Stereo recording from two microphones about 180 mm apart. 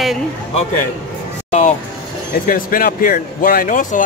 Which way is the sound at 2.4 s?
50° left (ahead or behind).